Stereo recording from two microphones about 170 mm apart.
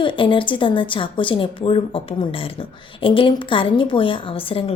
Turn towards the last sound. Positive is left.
turn(degrees=35)  # may be behind; listen again after turning